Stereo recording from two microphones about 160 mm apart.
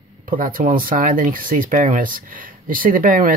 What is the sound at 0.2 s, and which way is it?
Speech, 60° right (ahead or behind).